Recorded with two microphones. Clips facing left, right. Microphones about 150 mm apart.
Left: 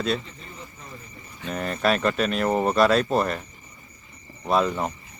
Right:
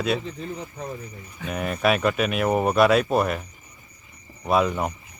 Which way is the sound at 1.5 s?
5° right (ahead or behind).